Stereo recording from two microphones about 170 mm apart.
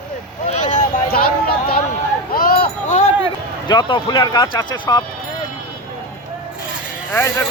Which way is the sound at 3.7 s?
25° left (ahead or behind).